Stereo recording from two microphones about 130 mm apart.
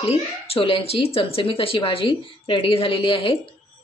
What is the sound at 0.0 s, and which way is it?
Speech, 50° left (ahead or behind).